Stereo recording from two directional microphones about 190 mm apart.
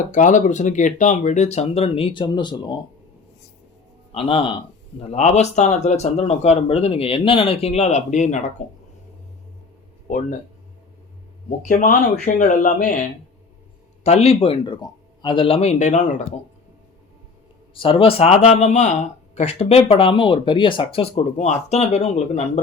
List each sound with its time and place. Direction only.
0.1 s speech: 40° left (ahead or behind); by 2.7 s 25° left (ahead or behind)
4.1 s speech: 30° left (ahead or behind)
11.4 s a man's voice: 45° left (ahead or behind)
14.0 s speech: 35° left (ahead or behind)
17.7 s speech: 30° left (ahead or behind)